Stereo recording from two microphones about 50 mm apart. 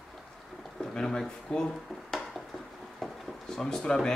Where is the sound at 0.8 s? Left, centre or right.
Centre.